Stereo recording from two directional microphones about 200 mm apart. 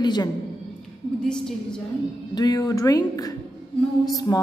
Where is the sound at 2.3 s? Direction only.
20° left (ahead or behind).